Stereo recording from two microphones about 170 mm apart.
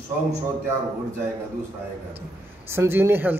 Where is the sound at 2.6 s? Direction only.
15° right (ahead or behind).